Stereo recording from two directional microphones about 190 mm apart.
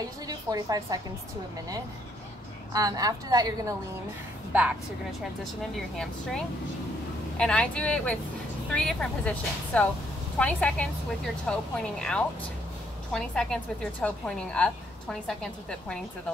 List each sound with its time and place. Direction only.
0.3 s a woman's voice: 20° right (ahead or behind)
2.7 s a woman's voice: 20° right (ahead or behind)
4.5 s a woman's voice: 5° right (ahead or behind)